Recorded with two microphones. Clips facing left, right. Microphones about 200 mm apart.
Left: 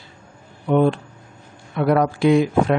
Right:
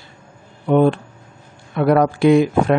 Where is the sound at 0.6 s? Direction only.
55° right (ahead or behind).